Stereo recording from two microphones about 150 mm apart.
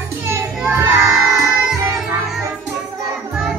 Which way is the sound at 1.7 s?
Centre (ahead or behind).